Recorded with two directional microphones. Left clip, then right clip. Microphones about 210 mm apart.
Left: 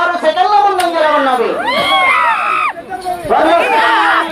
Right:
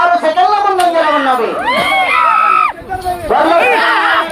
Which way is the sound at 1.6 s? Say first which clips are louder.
Even; centre (ahead or behind).